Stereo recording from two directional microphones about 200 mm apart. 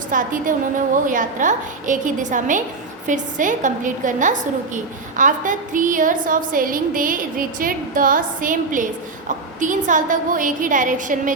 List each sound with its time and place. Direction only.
0.1 s a woman's voice: 40° right (ahead or behind)